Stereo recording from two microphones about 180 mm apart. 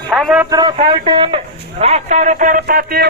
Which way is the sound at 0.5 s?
25° right (ahead or behind).